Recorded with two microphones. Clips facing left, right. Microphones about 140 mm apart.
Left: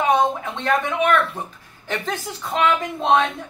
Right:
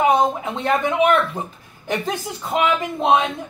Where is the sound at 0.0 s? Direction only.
20° right (ahead or behind).